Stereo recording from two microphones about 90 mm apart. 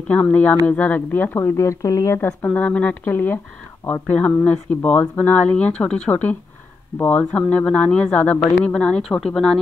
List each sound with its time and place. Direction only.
0.1 s speech: 20° left (ahead or behind); by 2.1 s 35° left (ahead or behind)
2.1 s speech: 20° left (ahead or behind)
4.5 s speech: 15° left (ahead or behind)